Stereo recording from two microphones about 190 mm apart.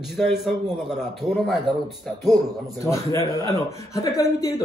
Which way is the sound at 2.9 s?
15° left (ahead or behind).